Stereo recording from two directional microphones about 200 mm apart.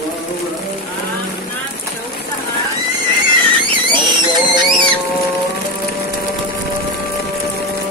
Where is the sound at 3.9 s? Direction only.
25° right (ahead or behind).